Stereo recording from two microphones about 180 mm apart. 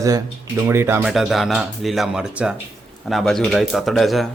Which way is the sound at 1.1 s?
Centre (ahead or behind).